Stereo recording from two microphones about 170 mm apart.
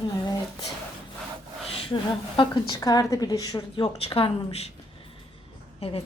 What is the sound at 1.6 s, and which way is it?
A woman's voice, 35° left (ahead or behind).